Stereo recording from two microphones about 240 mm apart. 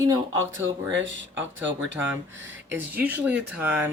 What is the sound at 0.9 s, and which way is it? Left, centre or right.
Speech, right.